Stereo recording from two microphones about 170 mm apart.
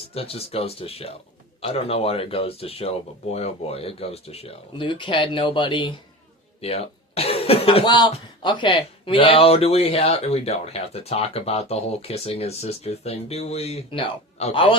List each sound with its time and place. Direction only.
0.1 s speech: 35° left (ahead or behind)